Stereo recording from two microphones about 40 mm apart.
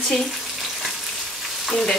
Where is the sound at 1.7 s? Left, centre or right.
Centre.